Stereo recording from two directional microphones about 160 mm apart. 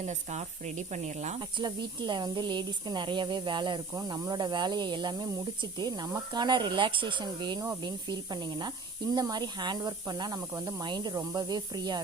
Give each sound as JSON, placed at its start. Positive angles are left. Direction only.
{"t": 0.0, "sound": "speech", "side_deg": -45}
{"t": 1.4, "sound": "speech", "side_deg": -30}